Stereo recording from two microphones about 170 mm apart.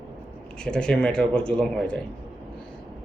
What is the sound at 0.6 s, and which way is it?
Speech, 5° left (ahead or behind).